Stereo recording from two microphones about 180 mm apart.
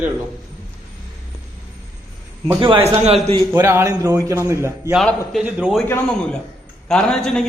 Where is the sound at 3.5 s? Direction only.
15° right (ahead or behind).